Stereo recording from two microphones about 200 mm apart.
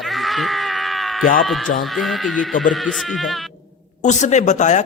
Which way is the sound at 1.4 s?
Centre (ahead or behind).